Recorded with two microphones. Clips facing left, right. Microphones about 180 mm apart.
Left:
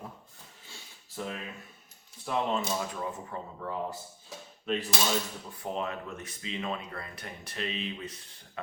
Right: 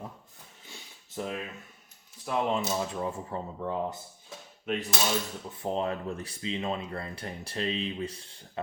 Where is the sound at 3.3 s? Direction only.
20° right (ahead or behind).